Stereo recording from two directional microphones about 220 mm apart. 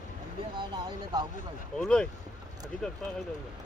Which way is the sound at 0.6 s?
20° right (ahead or behind).